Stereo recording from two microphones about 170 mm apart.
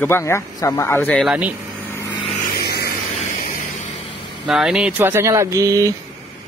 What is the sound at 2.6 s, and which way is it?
Vehicle, 70° left (ahead or behind).